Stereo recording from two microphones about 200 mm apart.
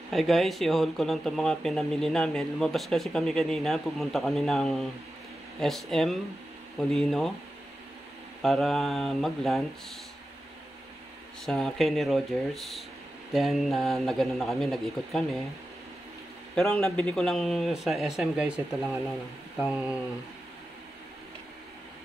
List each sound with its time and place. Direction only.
0.1 s speech: centre (ahead or behind)
8.4 s speech: centre (ahead or behind)
11.4 s speech: centre (ahead or behind)
16.5 s speech: centre (ahead or behind)
19.6 s speech: 5° right (ahead or behind)